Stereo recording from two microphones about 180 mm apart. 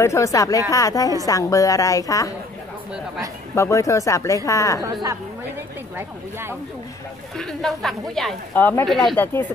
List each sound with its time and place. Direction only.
0.0 s speech: 15° left (ahead or behind)
3.5 s speech: 15° left (ahead or behind)
5.9 s speech: 15° right (ahead or behind)
7.3 s a woman's voice: centre (ahead or behind)